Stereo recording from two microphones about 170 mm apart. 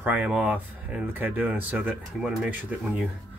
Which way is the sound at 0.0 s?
10° right (ahead or behind).